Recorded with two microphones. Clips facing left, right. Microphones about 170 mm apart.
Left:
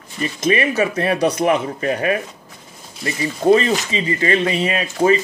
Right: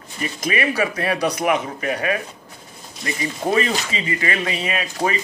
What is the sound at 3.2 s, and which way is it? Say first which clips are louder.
Speech: left 6 dB; 30° left (ahead or behind).